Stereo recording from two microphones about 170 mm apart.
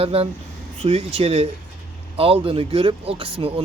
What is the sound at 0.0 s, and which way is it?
Speech, 35° right (ahead or behind).